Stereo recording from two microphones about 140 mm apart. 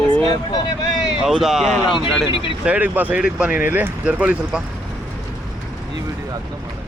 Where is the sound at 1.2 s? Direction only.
Centre (ahead or behind).